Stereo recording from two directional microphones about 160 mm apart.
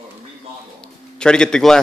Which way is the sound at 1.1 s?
5° left (ahead or behind).